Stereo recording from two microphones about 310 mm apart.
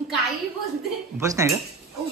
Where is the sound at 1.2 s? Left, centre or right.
Centre.